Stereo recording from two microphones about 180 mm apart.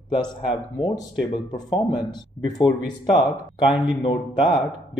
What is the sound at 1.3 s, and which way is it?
Speech, 25° left (ahead or behind).